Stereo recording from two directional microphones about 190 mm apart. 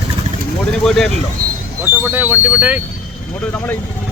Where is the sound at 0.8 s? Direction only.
Centre (ahead or behind).